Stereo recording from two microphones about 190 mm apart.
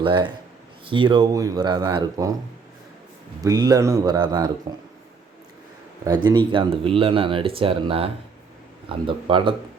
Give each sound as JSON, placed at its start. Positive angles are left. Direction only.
{"t": 0.0, "sound": "speech", "side_deg": -25}
{"t": 3.4, "sound": "speech", "side_deg": -20}
{"t": 6.1, "sound": "speech", "side_deg": -25}